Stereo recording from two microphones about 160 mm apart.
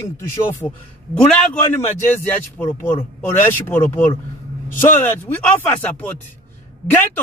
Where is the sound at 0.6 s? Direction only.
25° left (ahead or behind).